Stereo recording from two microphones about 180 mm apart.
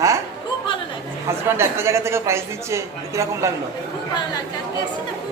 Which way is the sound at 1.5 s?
15° right (ahead or behind).